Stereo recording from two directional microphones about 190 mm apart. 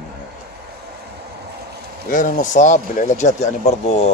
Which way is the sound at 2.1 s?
40° left (ahead or behind).